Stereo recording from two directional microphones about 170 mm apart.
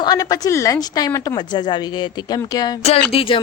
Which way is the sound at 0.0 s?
20° left (ahead or behind).